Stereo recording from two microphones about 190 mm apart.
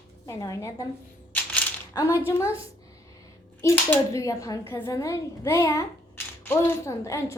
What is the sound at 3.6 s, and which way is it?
Speech, 10° left (ahead or behind).